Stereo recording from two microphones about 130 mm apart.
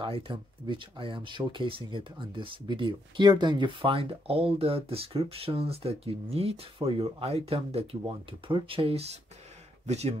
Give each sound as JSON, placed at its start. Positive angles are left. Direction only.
{"t": 0.0, "sound": "a man's voice", "side_deg": -40}